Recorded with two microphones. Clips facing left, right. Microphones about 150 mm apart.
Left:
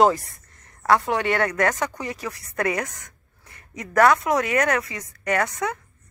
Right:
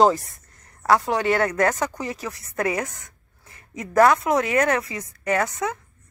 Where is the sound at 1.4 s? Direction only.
25° right (ahead or behind).